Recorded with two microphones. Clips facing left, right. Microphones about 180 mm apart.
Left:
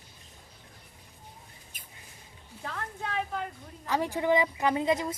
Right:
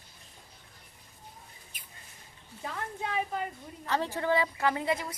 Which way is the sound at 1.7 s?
45° left (ahead or behind).